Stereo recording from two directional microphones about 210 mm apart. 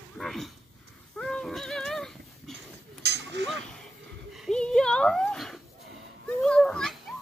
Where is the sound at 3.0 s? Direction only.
55° right (ahead or behind).